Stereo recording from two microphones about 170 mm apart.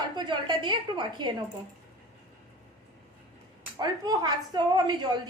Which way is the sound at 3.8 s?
25° right (ahead or behind).